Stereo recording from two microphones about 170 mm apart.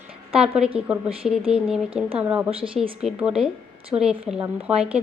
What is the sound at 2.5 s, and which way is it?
Speech, 30° right (ahead or behind).